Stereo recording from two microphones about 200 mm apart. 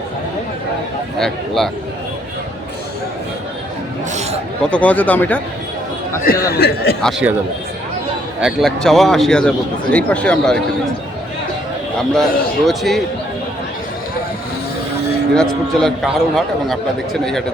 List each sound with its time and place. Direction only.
1.2 s a man's voice: centre (ahead or behind)
4.1 s speech: 35° right (ahead or behind)
4.6 s speech: 5° left (ahead or behind)
6.5 s speech: 50° left (ahead or behind)
7.0 s a man's voice: 5° right (ahead or behind)
8.4 s a man's voice: centre (ahead or behind)
12.1 s a man's voice: centre (ahead or behind)
15.4 s a man's voice: centre (ahead or behind)